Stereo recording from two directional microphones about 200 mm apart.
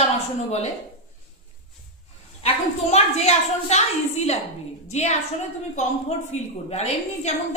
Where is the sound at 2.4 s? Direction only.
30° left (ahead or behind).